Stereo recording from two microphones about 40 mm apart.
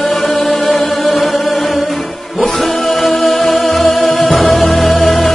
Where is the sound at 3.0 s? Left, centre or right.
Centre.